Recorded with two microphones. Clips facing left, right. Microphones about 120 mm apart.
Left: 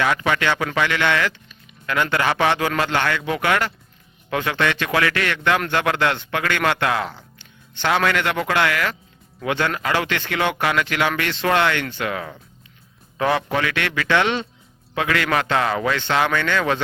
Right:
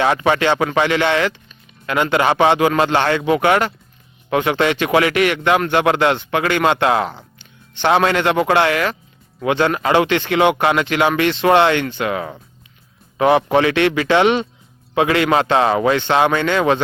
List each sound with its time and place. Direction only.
0.0 s a man's voice: 25° right (ahead or behind)